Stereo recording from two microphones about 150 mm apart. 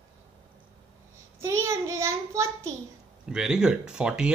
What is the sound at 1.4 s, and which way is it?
A child's voice, 20° right (ahead or behind).